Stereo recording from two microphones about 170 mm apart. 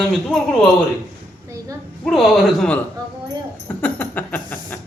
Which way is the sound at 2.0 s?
Centre (ahead or behind).